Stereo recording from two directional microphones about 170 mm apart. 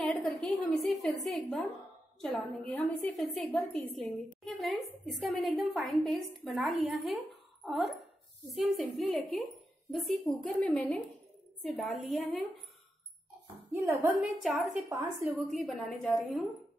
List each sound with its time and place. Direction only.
0.0 s a sound: centre (ahead or behind)
1.2 s a woman's voice: centre (ahead or behind)
13.7 s a woman's voice: 15° right (ahead or behind)
14.4 s a woman's voice: centre (ahead or behind)
14.9 s a woman's voice: 15° right (ahead or behind)
15.3 s a woman's voice: centre (ahead or behind)